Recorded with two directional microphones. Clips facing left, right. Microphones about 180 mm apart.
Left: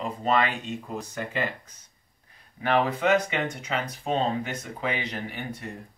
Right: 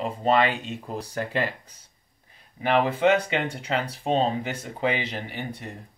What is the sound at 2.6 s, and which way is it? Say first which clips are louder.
Speech: right 3 dB; 25° right (ahead or behind).